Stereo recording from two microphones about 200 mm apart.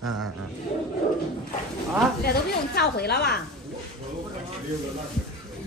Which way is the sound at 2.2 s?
55° left (ahead or behind).